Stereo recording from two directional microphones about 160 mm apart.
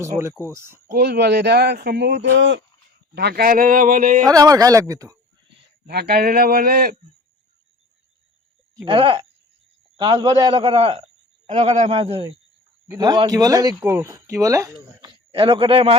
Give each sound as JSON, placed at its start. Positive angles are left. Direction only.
{"t": 0.0, "sound": "speech", "side_deg": -15}
{"t": 0.9, "sound": "speech", "side_deg": -75}
{"t": 3.2, "sound": "speech", "side_deg": -85}
{"t": 4.3, "sound": "speech", "side_deg": -20}
{"t": 5.9, "sound": "speech", "side_deg": -85}
{"t": 8.7, "sound": "a man's voice", "side_deg": -25}
{"t": 13.0, "sound": "speech", "side_deg": -25}
{"t": 15.1, "sound": "a man's voice", "side_deg": -35}